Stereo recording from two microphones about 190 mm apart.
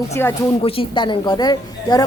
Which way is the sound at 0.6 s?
30° left (ahead or behind).